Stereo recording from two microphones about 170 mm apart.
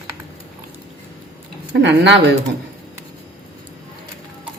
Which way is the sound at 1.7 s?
90° right.